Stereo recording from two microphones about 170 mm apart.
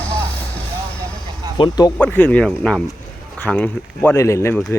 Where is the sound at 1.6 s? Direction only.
25° left (ahead or behind).